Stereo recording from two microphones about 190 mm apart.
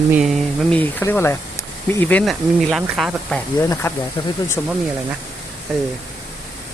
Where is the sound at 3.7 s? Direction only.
10° left (ahead or behind).